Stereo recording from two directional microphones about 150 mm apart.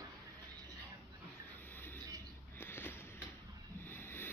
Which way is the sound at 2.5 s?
15° left (ahead or behind).